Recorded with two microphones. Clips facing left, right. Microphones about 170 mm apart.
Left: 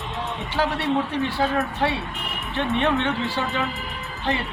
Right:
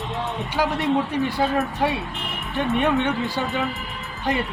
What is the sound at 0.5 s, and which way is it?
Speech, 15° right (ahead or behind).